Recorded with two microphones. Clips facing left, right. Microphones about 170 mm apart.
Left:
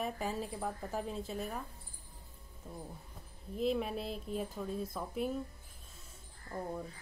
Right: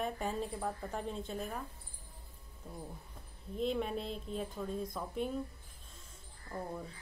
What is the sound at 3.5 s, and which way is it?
Speech, 5° left (ahead or behind).